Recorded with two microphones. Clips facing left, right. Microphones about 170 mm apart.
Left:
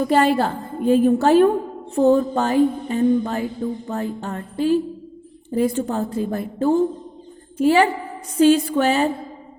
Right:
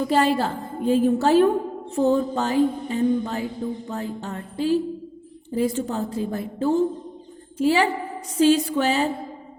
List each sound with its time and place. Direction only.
0.0 s a woman's voice: 55° left (ahead or behind)